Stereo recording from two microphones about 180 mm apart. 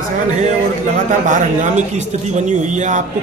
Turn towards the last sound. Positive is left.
turn(degrees=-40)  # may be behind; listen again after turning